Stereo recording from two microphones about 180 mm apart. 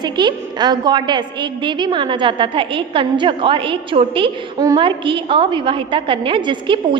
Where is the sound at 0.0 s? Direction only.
25° right (ahead or behind).